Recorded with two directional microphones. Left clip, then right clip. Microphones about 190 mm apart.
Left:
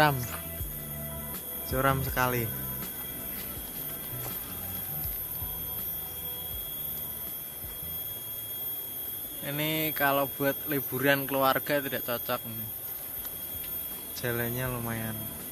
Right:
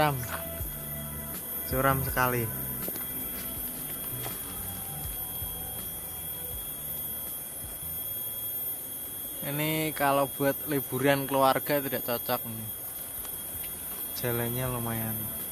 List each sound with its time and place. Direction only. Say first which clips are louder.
1.3 s music: right 1 dB; centre (ahead or behind)
9.4 s speech: even; centre (ahead or behind)
14.2 s speech: even; centre (ahead or behind)